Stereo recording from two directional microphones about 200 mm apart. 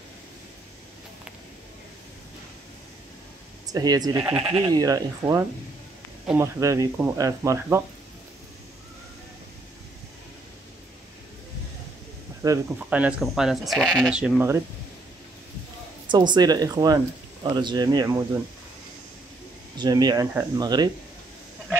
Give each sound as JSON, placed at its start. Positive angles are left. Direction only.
{"t": 3.7, "sound": "speech", "side_deg": -20}
{"t": 12.4, "sound": "speech", "side_deg": -10}
{"t": 16.1, "sound": "speech", "side_deg": -20}
{"t": 19.8, "sound": "speech", "side_deg": -20}